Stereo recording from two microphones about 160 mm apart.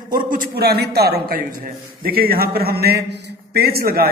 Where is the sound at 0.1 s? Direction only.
60° right (ahead or behind).